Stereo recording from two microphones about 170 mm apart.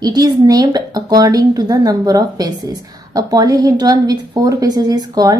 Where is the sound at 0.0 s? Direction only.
25° right (ahead or behind).